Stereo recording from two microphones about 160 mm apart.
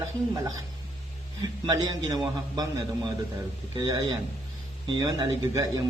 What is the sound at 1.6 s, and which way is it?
A man's voice, 25° right (ahead or behind).